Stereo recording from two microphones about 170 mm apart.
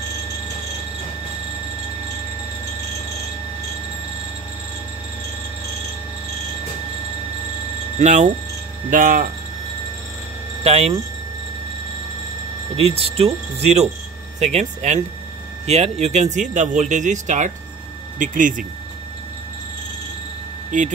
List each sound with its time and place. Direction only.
8.0 s speech: 45° right (ahead or behind)
10.6 s speech: 35° right (ahead or behind)
12.9 s speech: 35° right (ahead or behind); by 18.5 s 50° right (ahead or behind)
20.7 s speech: 50° right (ahead or behind)